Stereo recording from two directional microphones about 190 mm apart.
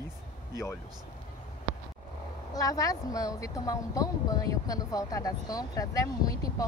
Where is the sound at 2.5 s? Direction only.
20° left (ahead or behind).